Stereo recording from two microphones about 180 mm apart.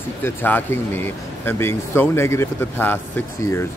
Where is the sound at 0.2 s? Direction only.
10° left (ahead or behind).